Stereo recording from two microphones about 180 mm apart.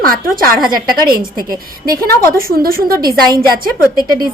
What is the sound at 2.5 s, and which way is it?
Speech, 55° right (ahead or behind).